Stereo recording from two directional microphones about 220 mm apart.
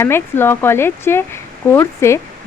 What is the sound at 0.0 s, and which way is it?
Speech, 10° left (ahead or behind).